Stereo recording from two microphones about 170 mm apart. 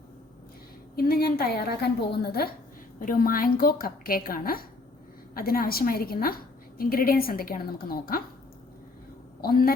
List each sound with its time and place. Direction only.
0.9 s a woman's voice: 65° left (ahead or behind)
3.0 s a woman's voice: 55° left (ahead or behind)
9.4 s a woman's voice: 60° left (ahead or behind)